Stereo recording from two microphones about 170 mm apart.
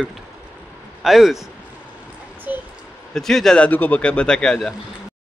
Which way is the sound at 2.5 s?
10° right (ahead or behind).